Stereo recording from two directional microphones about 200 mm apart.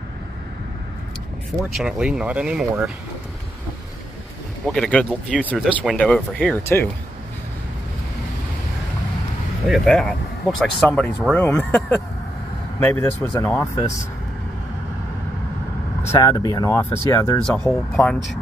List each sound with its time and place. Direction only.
1.6 s speech: centre (ahead or behind)
4.6 s speech: 5° left (ahead or behind)
9.7 s speech: 5° left (ahead or behind)
16.0 s speech: 15° left (ahead or behind)